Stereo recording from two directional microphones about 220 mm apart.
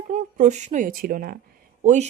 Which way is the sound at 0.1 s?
30° right (ahead or behind).